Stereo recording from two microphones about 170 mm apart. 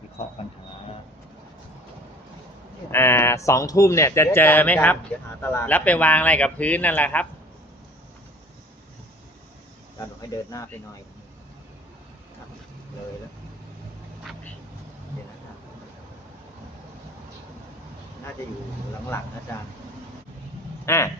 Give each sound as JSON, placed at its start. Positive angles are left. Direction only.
{"t": 2.9, "sound": "speech", "side_deg": 15}
{"t": 10.2, "sound": "speech", "side_deg": 20}
{"t": 20.8, "sound": "speech", "side_deg": 15}